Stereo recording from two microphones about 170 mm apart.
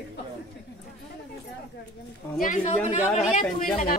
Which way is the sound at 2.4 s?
45° left (ahead or behind).